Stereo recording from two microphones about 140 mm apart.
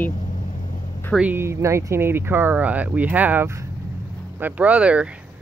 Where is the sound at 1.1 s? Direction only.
10° right (ahead or behind).